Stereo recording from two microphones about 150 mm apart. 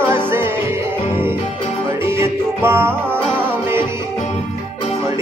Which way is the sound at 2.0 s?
15° right (ahead or behind).